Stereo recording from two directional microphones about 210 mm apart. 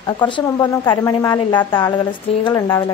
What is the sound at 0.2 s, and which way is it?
A woman's voice, 20° left (ahead or behind).